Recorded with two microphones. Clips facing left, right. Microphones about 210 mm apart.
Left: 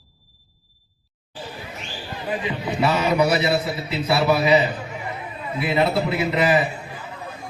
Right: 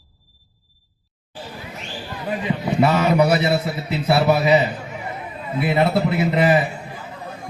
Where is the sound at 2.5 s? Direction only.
45° right (ahead or behind).